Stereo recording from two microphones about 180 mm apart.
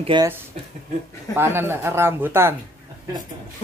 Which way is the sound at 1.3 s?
10° right (ahead or behind).